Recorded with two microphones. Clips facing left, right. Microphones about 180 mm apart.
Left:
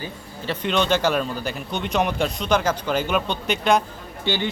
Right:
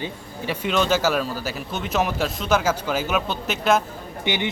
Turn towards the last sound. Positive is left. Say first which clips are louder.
# even
turn(degrees=-15)  # may be behind; listen again after turning